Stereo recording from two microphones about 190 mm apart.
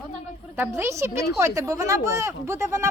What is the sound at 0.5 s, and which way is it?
A woman's voice, 15° right (ahead or behind).